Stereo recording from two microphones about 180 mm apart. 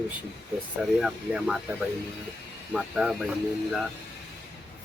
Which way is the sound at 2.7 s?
5° right (ahead or behind).